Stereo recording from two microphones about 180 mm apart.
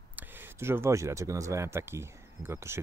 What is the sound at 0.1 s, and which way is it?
Speech, 15° right (ahead or behind).